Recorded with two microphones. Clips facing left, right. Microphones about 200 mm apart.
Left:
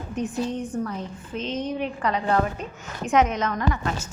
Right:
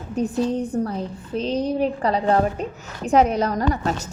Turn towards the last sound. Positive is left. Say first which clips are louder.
# right 4 dB
turn(degrees=-35)  # may be behind; listen again after turning